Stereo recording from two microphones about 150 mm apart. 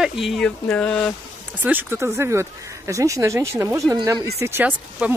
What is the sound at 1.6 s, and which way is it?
Speech, 10° right (ahead or behind).